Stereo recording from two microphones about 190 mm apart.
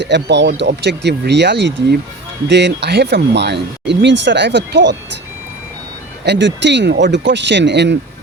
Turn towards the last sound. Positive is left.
turn(degrees=-65)  # may be behind; listen again after turning